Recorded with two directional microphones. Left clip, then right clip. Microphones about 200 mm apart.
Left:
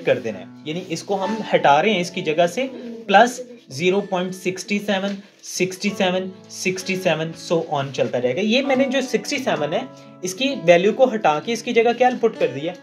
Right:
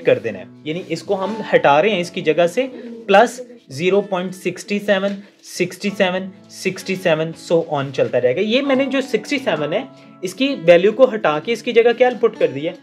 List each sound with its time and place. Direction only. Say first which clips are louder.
0.0 s speech: right 4 dB; 45° right (ahead or behind)